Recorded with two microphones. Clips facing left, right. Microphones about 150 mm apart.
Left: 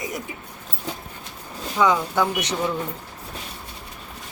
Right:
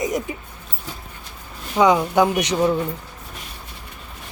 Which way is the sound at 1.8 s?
15° right (ahead or behind).